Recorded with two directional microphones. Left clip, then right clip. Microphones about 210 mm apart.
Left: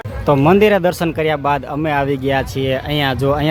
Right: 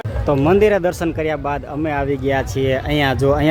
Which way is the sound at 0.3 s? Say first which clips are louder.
Left 2 dB; 15° left (ahead or behind).